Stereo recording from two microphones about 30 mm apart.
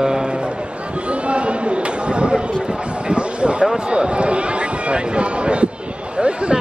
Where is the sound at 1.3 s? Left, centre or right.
Right.